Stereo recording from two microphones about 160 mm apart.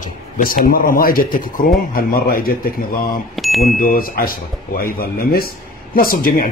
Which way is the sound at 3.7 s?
60° left (ahead or behind).